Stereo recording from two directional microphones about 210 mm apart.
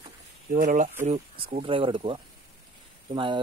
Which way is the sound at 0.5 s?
40° right (ahead or behind).